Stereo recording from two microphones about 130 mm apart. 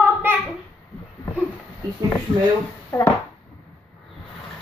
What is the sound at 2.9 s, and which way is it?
Speech, 15° left (ahead or behind).